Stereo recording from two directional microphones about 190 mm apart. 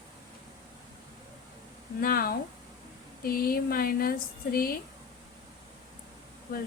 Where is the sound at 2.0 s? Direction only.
50° left (ahead or behind).